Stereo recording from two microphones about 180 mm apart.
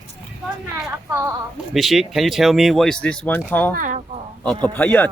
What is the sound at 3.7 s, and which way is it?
Speech, 45° right (ahead or behind).